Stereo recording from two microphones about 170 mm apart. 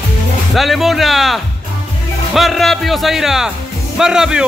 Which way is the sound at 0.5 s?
Centre (ahead or behind).